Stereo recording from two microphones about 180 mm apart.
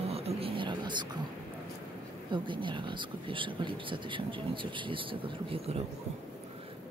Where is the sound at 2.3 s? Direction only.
25° right (ahead or behind).